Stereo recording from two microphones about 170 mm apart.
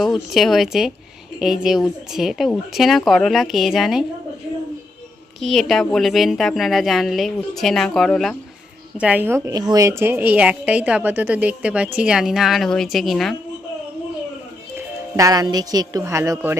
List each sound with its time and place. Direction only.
0.3 s speech: centre (ahead or behind)
5.4 s speech: centre (ahead or behind)
9.0 s a woman's voice: 10° right (ahead or behind)
14.8 s speech: 20° right (ahead or behind)